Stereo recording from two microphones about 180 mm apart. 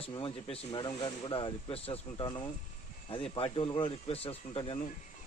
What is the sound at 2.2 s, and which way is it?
Speech, 20° left (ahead or behind).